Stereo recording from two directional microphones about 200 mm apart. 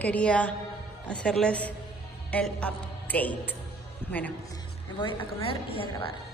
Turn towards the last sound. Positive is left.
turn(degrees=25)  # may be behind; listen again after turning